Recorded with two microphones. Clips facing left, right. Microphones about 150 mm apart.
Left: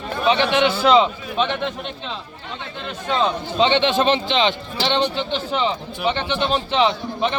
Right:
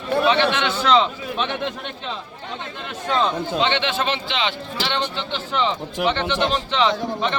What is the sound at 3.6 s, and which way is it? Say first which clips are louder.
A man's voice: left 7 dB; 20° left (ahead or behind).